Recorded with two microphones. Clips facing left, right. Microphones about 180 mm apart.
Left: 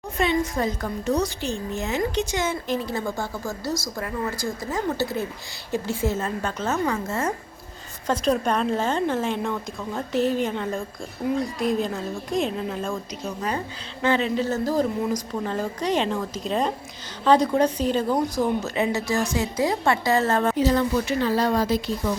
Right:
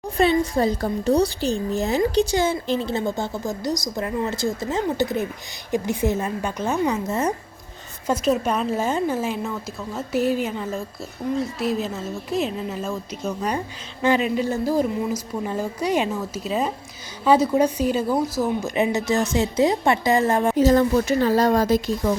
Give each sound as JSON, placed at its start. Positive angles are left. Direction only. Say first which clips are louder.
{"t": 0.2, "sound": "a woman's voice", "louder": "right 4 dB", "side_deg": -35}
{"t": 8.0, "sound": "a woman's voice", "louder": "right 1 dB", "side_deg": -5}
{"t": 18.7, "sound": "a woman's voice", "louder": "right 3 dB", "side_deg": -20}
{"t": 20.6, "sound": "speech", "louder": "right 4 dB", "side_deg": -45}